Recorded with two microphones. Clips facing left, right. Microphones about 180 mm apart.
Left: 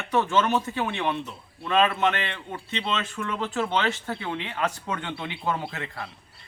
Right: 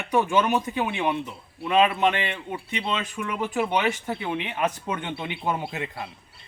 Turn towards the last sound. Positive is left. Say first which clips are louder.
# right 2 dB
turn(degrees=-15)  # may be behind; listen again after turning